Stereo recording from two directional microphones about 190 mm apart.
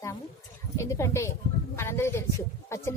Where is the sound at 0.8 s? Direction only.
15° left (ahead or behind).